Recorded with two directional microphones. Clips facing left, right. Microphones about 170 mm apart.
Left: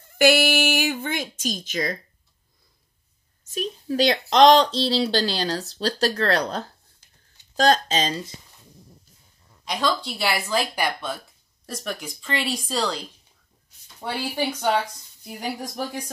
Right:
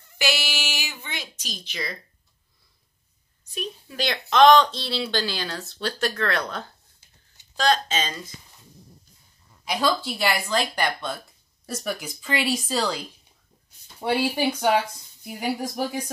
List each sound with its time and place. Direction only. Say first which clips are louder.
0.0 s speech: left 10 dB; 50° left (ahead or behind)
3.5 s speech: left 8 dB; 40° left (ahead or behind)
9.7 s speech: right 1 dB; 5° right (ahead or behind)